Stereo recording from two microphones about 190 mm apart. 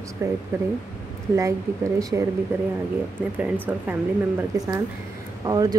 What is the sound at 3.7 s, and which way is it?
Speech, 5° right (ahead or behind).